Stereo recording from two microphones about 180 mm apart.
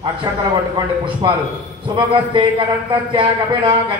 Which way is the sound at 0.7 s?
25° right (ahead or behind).